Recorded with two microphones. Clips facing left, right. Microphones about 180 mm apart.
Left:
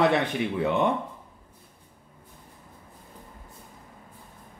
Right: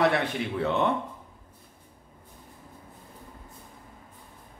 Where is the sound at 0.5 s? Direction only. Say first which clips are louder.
Left 1 dB; 15° left (ahead or behind).